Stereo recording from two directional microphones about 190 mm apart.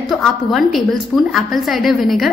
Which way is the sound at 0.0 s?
Centre (ahead or behind).